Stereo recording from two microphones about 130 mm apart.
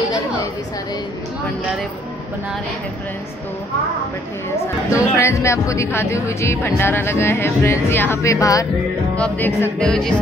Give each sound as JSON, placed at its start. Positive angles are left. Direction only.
{"t": 4.9, "sound": "speech", "side_deg": 20}
{"t": 9.1, "sound": "music", "side_deg": 10}